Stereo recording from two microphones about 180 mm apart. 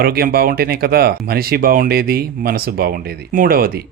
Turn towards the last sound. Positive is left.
turn(degrees=-55)  # may be behind; listen again after turning